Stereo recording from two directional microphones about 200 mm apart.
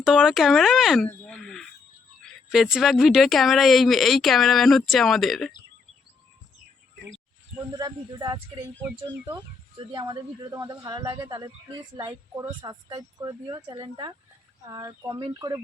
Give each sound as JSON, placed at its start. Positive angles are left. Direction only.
{"t": 0.0, "sound": "a woman's voice", "side_deg": 0}
{"t": 1.3, "sound": "a sound", "side_deg": 0}
{"t": 2.2, "sound": "a woman's voice", "side_deg": 0}
{"t": 7.7, "sound": "speech", "side_deg": -20}